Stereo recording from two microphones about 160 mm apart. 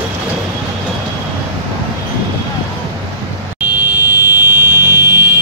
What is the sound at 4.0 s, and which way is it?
Vehicle, 15° right (ahead or behind).